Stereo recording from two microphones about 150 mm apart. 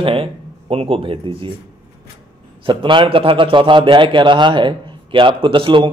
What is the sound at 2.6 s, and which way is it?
A man's voice, 35° right (ahead or behind).